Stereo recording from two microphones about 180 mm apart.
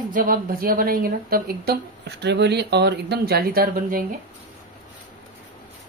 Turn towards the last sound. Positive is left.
turn(degrees=-55)  # may be behind; listen again after turning